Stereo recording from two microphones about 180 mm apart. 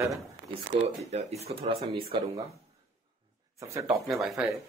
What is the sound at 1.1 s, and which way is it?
Speech, 35° right (ahead or behind).